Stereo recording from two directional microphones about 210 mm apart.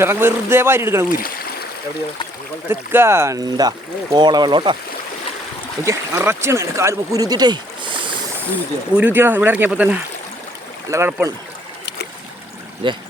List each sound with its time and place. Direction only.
0.0 s speech: 10° right (ahead or behind)
2.6 s speech: 10° right (ahead or behind)
5.8 s speech: 10° right (ahead or behind)
9.0 s speech: 10° right (ahead or behind)
12.8 s speech: 25° right (ahead or behind)